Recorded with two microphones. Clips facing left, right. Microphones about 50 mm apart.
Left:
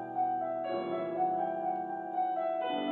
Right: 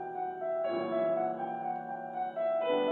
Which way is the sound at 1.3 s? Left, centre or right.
Centre.